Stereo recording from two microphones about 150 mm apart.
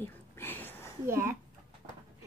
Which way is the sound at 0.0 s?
15° left (ahead or behind).